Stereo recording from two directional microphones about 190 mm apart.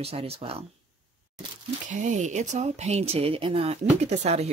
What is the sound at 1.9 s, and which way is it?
Speech, 40° right (ahead or behind).